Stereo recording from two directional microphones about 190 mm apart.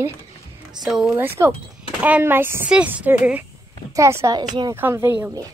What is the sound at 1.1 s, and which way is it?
A woman's voice, 10° right (ahead or behind).